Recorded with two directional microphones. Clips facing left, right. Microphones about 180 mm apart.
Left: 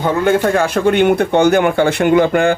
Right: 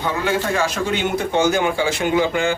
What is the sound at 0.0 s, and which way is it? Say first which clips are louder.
Speech: left 8 dB; 50° left (ahead or behind).